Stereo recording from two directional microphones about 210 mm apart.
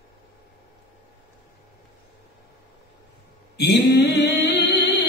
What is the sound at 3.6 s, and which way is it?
Mantra, 50° left (ahead or behind).